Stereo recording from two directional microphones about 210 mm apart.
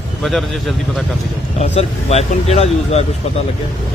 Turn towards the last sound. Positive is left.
turn(degrees=30)  # may be behind; listen again after turning